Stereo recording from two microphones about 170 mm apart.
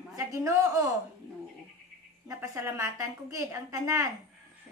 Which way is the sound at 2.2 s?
15° right (ahead or behind).